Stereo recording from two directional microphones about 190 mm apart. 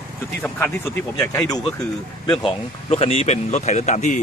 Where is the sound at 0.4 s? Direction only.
5° left (ahead or behind).